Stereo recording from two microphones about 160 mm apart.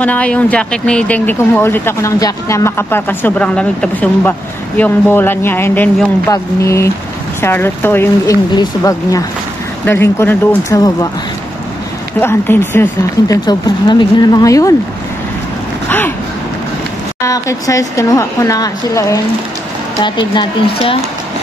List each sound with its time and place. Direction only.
0.0 s speech: 10° left (ahead or behind)
12.2 s speech: 15° left (ahead or behind)
13.3 s speech: 25° left (ahead or behind)
17.2 s speech: 20° left (ahead or behind); by 21.0 s 35° left (ahead or behind)